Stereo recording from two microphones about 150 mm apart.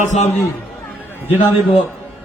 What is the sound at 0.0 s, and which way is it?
Speech, 50° left (ahead or behind).